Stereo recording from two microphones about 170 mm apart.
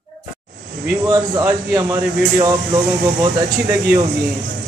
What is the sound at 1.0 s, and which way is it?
Speech, 20° right (ahead or behind).